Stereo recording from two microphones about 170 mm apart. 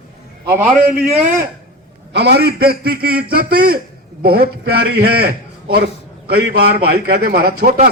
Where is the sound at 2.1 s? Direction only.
80° right.